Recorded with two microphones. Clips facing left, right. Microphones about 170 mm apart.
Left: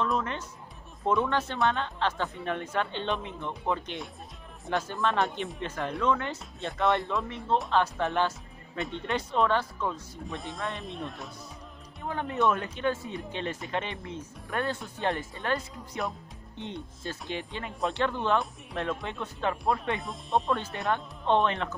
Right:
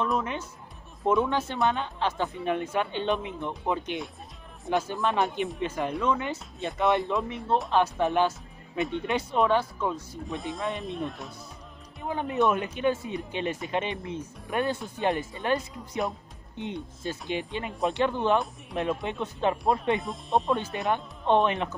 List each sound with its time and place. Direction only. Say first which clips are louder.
0.0 s music: right 1 dB; 10° right (ahead or behind)
1.2 s speech: right 1 dB; 10° right (ahead or behind)
5.2 s speech: right 3 dB; centre (ahead or behind)
7.7 s speech: right 5 dB; 15° right (ahead or behind)
8.7 s speech: right 5 dB; centre (ahead or behind)
9.0 s speech: even; 10° right (ahead or behind)
10.2 s speech: right 3 dB; centre (ahead or behind)
12.0 s speech: right 2 dB; 15° right (ahead or behind)
17.0 s speech: right 4 dB; 20° right (ahead or behind)
20.0 s speech: right 2 dB; centre (ahead or behind)
20.7 s speech: right 2 dB; 15° right (ahead or behind)